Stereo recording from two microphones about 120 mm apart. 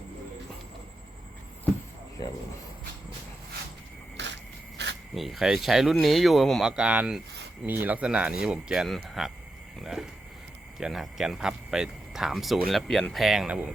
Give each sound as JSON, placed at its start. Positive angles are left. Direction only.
{"t": 2.2, "sound": "cricket", "side_deg": 35}
{"t": 5.1, "sound": "speech", "side_deg": 0}